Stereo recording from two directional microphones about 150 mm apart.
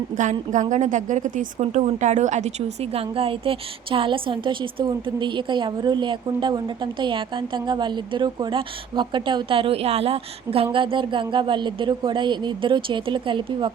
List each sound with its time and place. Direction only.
0.2 s a woman's voice: 55° right (ahead or behind); by 13.7 s 35° right (ahead or behind)